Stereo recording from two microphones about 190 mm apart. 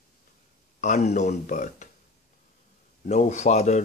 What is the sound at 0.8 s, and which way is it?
Speech, 40° left (ahead or behind).